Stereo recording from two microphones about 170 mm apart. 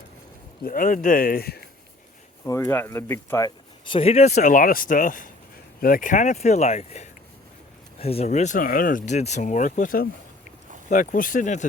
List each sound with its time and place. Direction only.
0.6 s speech: 50° left (ahead or behind)
2.4 s speech: 15° left (ahead or behind); by 11.6 s 45° left (ahead or behind)